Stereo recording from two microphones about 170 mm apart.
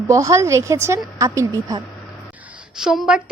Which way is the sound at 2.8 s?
5° right (ahead or behind).